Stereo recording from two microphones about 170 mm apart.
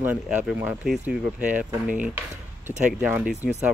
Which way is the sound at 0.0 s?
10° right (ahead or behind).